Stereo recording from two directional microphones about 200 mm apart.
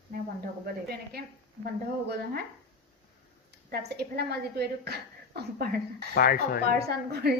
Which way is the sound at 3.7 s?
55° right (ahead or behind).